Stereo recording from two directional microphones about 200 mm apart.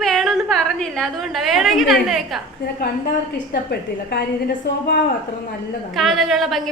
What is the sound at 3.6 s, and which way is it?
Speech, 55° left (ahead or behind).